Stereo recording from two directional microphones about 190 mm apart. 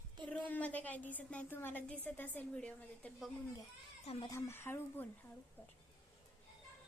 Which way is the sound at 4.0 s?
35° left (ahead or behind).